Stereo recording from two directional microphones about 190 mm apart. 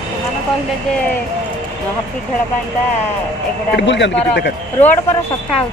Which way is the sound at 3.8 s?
65° left (ahead or behind).